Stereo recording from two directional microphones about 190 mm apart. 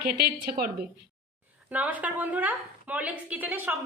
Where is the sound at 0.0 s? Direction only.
55° right (ahead or behind).